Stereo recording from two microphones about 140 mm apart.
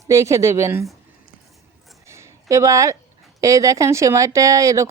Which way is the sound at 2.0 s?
20° right (ahead or behind).